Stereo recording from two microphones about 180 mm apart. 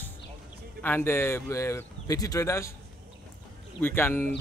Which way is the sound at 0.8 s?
10° left (ahead or behind).